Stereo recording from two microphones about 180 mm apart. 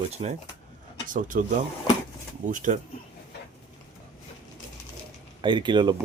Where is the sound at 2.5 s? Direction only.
45° right (ahead or behind).